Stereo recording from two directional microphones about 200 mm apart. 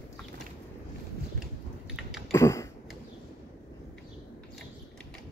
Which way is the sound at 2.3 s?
15° left (ahead or behind).